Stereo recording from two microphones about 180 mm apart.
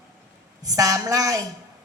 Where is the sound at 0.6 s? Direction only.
20° right (ahead or behind).